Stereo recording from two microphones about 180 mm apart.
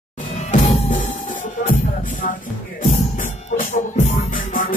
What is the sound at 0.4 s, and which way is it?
Music, 40° left (ahead or behind).